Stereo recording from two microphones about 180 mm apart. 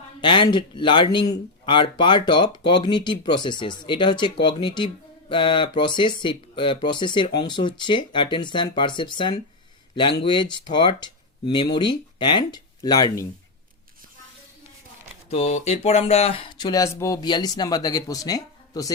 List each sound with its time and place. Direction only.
0.2 s speech: 25° left (ahead or behind)
15.3 s speech: 35° left (ahead or behind); by 18.9 s 20° left (ahead or behind)